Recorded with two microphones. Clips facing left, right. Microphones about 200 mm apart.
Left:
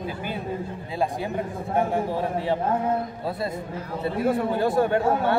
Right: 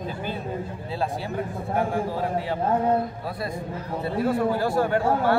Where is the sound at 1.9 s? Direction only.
25° left (ahead or behind).